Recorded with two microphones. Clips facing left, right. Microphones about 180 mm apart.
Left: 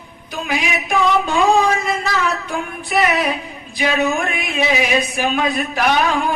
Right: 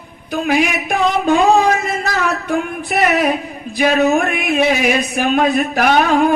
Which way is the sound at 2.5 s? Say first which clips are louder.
Right 4 dB; 50° right (ahead or behind).